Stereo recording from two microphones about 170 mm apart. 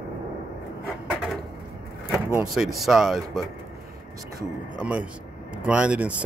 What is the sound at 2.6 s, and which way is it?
Speech, centre (ahead or behind).